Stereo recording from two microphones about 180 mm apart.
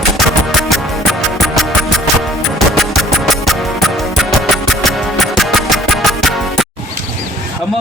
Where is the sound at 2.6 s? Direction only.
Centre (ahead or behind).